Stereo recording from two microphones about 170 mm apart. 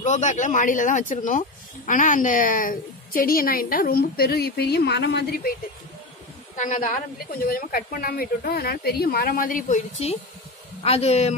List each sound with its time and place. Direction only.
0.0 s a woman's voice: 45° left (ahead or behind); by 5.5 s 80° left
6.5 s a woman's voice: 45° left (ahead or behind)